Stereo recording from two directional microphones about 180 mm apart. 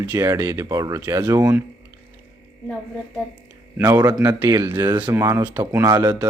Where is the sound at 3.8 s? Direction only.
20° right (ahead or behind).